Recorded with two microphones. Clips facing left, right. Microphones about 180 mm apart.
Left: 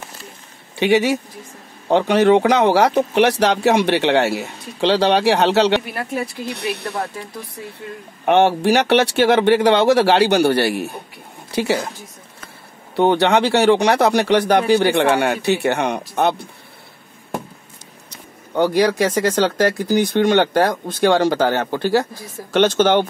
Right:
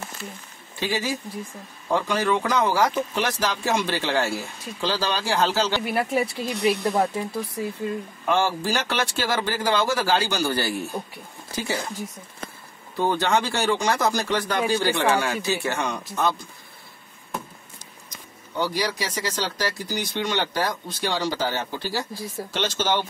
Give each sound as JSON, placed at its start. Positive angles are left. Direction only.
{"t": 0.7, "sound": "speech", "side_deg": 70}
{"t": 6.8, "sound": "speech", "side_deg": -15}
{"t": 8.3, "sound": "speech", "side_deg": 65}
{"t": 12.9, "sound": "speech", "side_deg": 70}
{"t": 18.1, "sound": "speech", "side_deg": 60}